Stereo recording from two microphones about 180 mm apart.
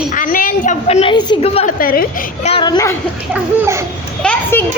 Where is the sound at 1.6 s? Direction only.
55° left (ahead or behind).